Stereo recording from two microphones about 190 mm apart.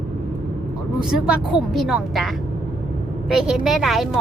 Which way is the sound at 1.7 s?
Centre (ahead or behind).